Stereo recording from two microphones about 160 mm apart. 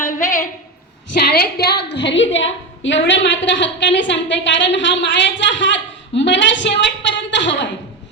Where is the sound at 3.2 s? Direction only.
90° left.